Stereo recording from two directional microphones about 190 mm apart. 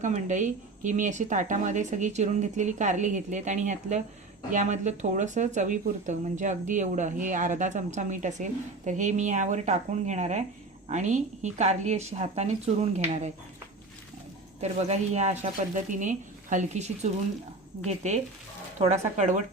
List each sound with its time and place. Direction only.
0.0 s speech: 40° right (ahead or behind)
14.6 s speech: 35° right (ahead or behind)